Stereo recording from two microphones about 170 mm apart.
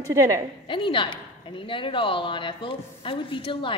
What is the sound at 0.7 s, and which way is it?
A woman's voice, 30° left (ahead or behind).